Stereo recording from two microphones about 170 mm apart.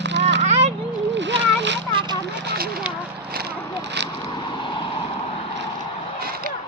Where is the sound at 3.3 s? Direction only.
75° right (ahead or behind); by 4.1 s 90° right.